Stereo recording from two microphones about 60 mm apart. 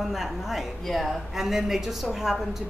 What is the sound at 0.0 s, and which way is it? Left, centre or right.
Speech, centre.